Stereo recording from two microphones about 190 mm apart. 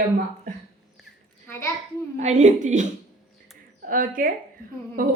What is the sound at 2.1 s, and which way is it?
A woman's voice, 40° right (ahead or behind).